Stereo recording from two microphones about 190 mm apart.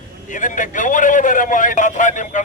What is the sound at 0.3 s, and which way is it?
A man's voice, 45° left (ahead or behind).